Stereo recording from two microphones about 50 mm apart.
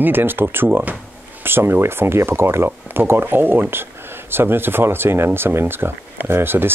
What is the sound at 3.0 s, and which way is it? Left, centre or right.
Speech, right.